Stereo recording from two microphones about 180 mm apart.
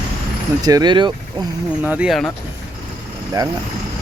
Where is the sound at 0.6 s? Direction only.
20° right (ahead or behind).